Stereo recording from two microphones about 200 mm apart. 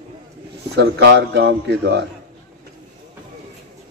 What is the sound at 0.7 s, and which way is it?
Speech, 60° right (ahead or behind).